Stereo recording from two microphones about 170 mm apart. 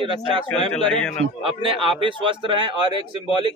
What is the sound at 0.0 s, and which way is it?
Speech, 30° right (ahead or behind).